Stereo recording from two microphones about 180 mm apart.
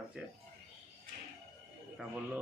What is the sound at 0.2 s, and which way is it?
Speech, 5° right (ahead or behind).